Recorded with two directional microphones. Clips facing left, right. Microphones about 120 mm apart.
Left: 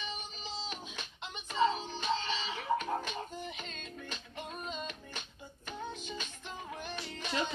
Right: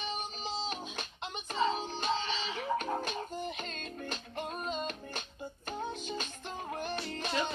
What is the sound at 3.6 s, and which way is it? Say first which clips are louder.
Music: right 4 dB; 50° right (ahead or behind).